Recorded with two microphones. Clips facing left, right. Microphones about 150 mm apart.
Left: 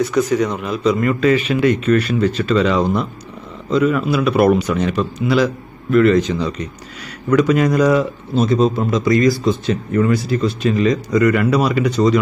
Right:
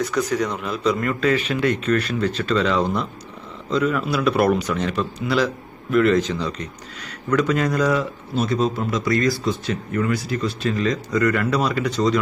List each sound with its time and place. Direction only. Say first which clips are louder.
0.0 s speech: left 5 dB; 5° left (ahead or behind); by 10.7 s 25° left (ahead or behind)
10.7 s speech: left 6 dB; 15° left (ahead or behind)